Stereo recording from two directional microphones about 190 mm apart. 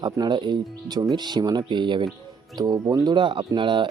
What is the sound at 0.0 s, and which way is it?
Speech, 25° right (ahead or behind).